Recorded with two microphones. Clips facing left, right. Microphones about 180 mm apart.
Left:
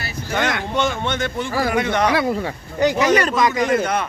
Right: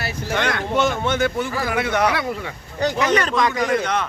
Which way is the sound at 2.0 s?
30° left (ahead or behind).